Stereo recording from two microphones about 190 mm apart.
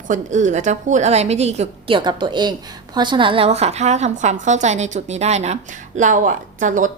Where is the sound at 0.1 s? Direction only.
40° right (ahead or behind).